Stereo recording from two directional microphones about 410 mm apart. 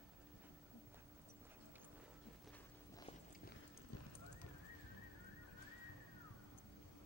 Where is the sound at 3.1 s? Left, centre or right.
Centre.